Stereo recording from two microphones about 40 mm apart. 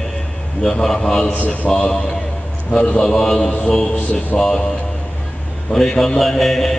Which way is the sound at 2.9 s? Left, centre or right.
Centre.